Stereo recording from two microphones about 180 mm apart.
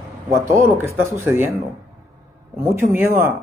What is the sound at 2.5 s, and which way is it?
Speech, 15° right (ahead or behind).